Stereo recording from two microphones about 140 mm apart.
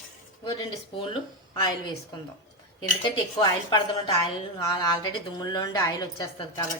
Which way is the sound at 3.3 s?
40° left (ahead or behind).